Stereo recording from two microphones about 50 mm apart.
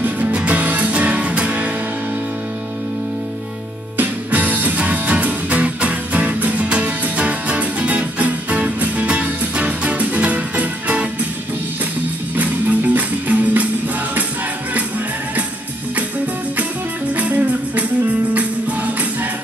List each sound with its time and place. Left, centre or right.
0.0 s music: right
3.9 s music: right
12.4 s music: right
17.1 s music: right